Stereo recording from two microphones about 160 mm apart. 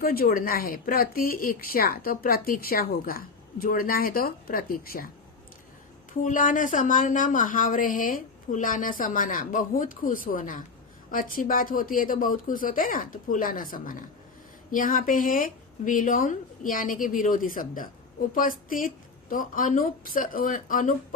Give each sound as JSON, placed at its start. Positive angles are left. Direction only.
{"t": 0.0, "sound": "a woman's voice", "side_deg": 65}
{"t": 6.2, "sound": "a woman's voice", "side_deg": 55}